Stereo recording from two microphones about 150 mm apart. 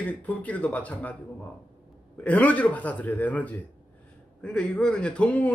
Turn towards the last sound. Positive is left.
turn(degrees=10)  # may be behind; listen again after turning